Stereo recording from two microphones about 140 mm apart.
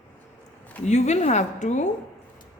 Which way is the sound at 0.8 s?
55° left (ahead or behind).